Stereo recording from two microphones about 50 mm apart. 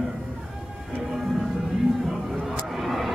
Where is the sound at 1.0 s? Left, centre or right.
Centre.